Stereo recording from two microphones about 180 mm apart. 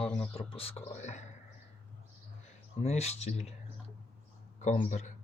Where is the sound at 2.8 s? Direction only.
35° left (ahead or behind).